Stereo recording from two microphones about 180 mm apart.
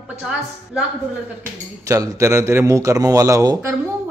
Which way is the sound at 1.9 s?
15° right (ahead or behind).